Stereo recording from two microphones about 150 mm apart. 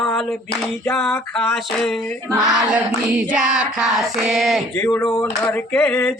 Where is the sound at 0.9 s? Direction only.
15° left (ahead or behind).